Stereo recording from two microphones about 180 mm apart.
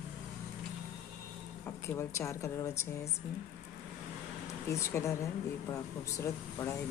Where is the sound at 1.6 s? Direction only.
15° left (ahead or behind).